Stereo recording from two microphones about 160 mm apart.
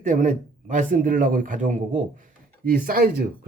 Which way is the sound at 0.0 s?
55° right (ahead or behind).